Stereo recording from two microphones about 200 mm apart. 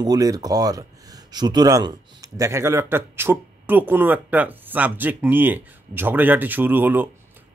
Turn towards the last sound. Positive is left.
turn(degrees=-10)  # may be behind; listen again after turning